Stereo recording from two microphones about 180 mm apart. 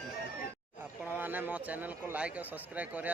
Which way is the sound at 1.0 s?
10° right (ahead or behind).